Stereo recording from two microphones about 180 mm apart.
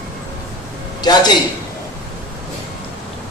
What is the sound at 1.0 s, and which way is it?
Speech, 25° left (ahead or behind).